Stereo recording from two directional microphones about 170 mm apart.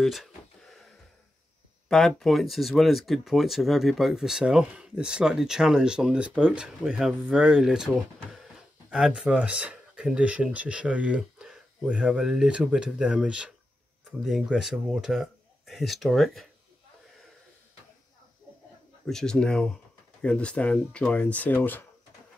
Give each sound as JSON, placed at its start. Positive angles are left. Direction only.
{"t": 0.0, "sound": "a sound", "side_deg": 0}
{"t": 1.9, "sound": "speech", "side_deg": 5}
{"t": 19.0, "sound": "speech", "side_deg": 5}